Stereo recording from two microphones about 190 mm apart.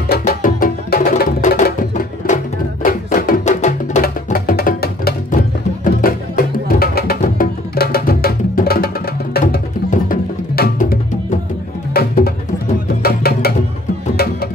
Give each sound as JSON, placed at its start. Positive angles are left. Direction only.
{"t": 0.1, "sound": "music", "side_deg": 50}
{"t": 4.0, "sound": "music", "side_deg": 50}